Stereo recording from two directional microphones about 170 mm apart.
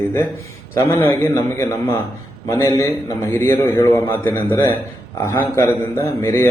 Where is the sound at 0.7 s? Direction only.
15° left (ahead or behind).